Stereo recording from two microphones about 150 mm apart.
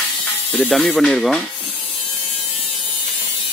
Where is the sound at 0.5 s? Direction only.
10° left (ahead or behind).